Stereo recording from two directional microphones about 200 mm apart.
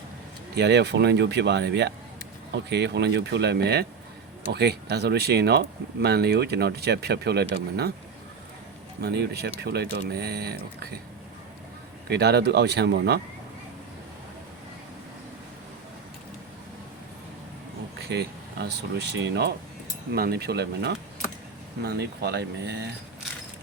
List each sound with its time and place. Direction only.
0.5 s speech: 55° right (ahead or behind)
9.0 s speech: 55° right (ahead or behind)
12.0 s speech: 55° right (ahead or behind)
18.1 s speech: 55° right (ahead or behind)